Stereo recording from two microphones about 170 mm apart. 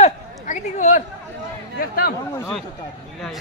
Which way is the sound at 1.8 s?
60° left (ahead or behind).